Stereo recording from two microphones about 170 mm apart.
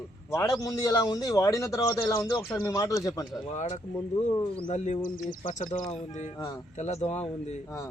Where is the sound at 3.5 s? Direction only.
40° left (ahead or behind).